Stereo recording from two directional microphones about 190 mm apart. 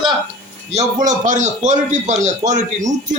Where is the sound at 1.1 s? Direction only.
40° right (ahead or behind).